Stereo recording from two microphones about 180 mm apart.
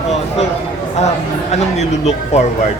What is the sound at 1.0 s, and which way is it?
Speech, 40° left (ahead or behind).